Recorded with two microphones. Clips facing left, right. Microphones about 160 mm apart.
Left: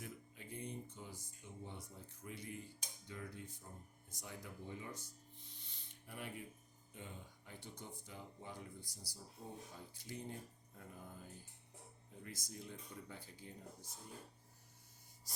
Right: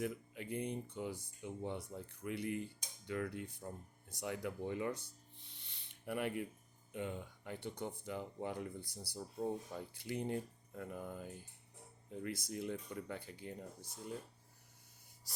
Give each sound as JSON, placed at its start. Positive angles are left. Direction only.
{"t": 0.0, "sound": "speech", "side_deg": -70}